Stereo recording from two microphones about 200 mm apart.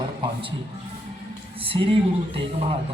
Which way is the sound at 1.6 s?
25° right (ahead or behind).